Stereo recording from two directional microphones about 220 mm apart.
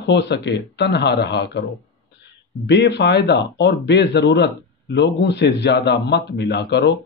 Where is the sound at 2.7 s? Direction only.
50° left (ahead or behind).